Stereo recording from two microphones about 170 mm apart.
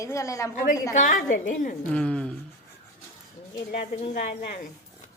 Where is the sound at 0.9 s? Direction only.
50° left (ahead or behind).